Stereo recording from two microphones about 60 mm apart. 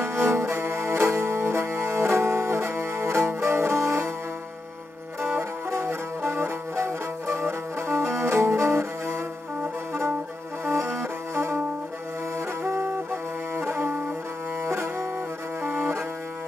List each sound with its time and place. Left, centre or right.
0.0 s music: right
5.2 s music: right
10.6 s music: right
15.6 s music: right